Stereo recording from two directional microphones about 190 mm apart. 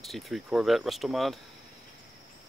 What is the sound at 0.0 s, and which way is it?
Speech, centre (ahead or behind).